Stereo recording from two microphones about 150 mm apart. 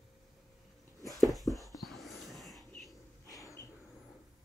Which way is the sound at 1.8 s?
Centre (ahead or behind).